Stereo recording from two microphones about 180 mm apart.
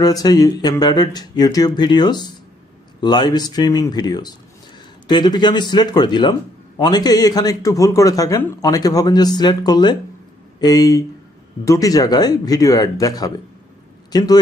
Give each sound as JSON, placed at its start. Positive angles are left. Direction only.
{"t": 0.0, "sound": "speech", "side_deg": 20}